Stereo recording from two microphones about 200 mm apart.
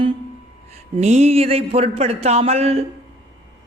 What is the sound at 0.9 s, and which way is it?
A woman's voice, 35° right (ahead or behind).